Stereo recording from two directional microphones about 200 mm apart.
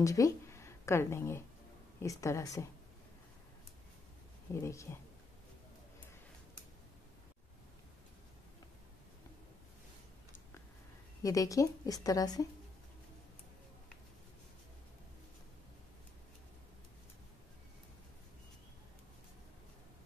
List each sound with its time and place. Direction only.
0.0 s a woman's voice: 15° left (ahead or behind)
4.6 s a woman's voice: 15° left (ahead or behind)
11.2 s a woman's voice: 15° left (ahead or behind)